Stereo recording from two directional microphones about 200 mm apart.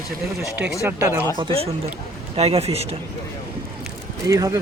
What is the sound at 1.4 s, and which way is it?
A man's voice, 30° right (ahead or behind).